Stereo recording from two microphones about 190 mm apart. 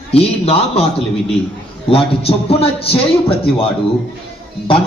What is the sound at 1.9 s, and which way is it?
A man's voice, 30° left (ahead or behind).